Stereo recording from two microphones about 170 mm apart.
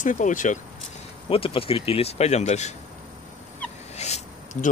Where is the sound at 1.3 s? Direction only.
35° left (ahead or behind).